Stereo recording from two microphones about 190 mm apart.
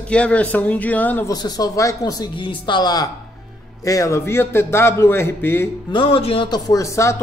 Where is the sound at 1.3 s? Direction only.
20° left (ahead or behind).